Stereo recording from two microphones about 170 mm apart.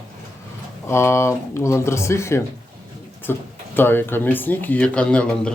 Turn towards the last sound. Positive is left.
turn(degrees=5)  # may be behind; listen again after turning